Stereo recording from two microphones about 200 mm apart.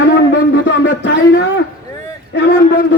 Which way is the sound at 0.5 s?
65° left (ahead or behind).